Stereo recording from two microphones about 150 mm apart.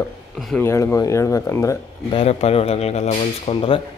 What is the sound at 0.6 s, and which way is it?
A man's voice, 15° left (ahead or behind).